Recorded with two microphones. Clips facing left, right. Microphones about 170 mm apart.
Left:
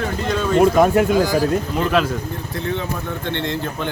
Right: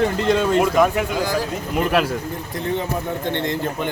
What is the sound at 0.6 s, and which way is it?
Speech, 35° left (ahead or behind).